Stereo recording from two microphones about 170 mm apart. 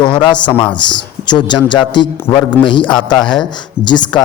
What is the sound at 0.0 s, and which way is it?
A man's voice, 25° left (ahead or behind).